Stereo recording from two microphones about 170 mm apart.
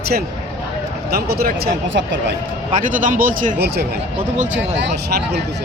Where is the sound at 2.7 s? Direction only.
50° right (ahead or behind).